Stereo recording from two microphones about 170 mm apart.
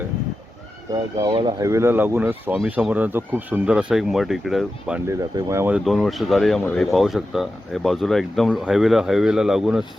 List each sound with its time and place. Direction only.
1.2 s speech: 25° right (ahead or behind); by 4.9 s centre (ahead or behind)
5.0 s speech: 15° right (ahead or behind)